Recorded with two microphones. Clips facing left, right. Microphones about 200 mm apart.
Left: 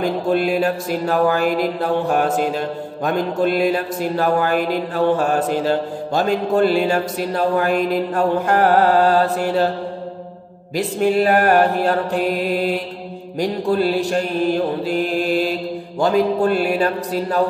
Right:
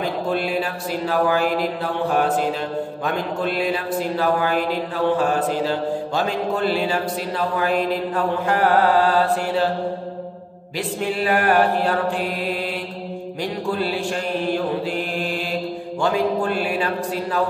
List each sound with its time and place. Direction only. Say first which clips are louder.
0.3 s mantra: left 8 dB; 45° left (ahead or behind)
3.3 s mantra: left 5 dB; 45° left (ahead or behind)
5.7 s mantra: left 3 dB; 45° left (ahead or behind)
10.8 s mantra: left 7 dB; 40° left (ahead or behind)
13.4 s mantra: left 6 dB; 40° left (ahead or behind)
16.0 s a man's voice: left 4 dB; 40° left (ahead or behind)